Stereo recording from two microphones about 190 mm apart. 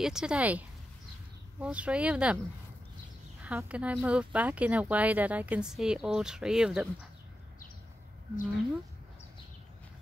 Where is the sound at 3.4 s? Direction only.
5° right (ahead or behind).